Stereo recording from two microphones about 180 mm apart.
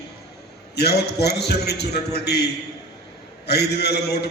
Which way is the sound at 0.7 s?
65° left (ahead or behind).